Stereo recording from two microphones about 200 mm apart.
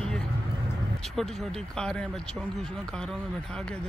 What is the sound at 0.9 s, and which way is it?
Speech, centre (ahead or behind).